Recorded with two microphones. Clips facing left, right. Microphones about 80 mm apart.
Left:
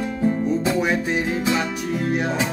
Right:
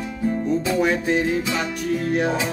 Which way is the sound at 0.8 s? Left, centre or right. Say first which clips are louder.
Right 2 dB; centre.